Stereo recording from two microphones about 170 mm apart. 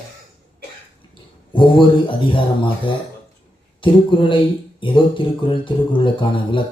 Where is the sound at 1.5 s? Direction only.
30° left (ahead or behind).